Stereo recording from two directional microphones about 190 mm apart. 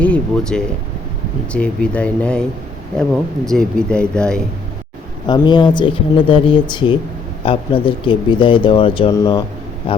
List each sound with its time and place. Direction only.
0.0 s speech: 5° left (ahead or behind)
5.2 s speech: 25° left (ahead or behind)